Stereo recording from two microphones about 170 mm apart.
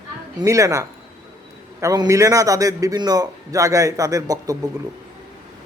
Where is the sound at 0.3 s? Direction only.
20° right (ahead or behind).